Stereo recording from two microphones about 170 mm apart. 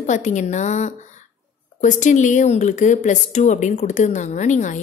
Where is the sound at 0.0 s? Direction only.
45° left (ahead or behind).